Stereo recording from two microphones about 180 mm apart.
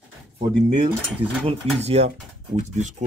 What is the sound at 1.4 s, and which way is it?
Speech, 35° right (ahead or behind).